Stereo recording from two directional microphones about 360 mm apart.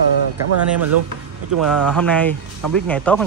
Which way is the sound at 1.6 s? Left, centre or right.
Centre.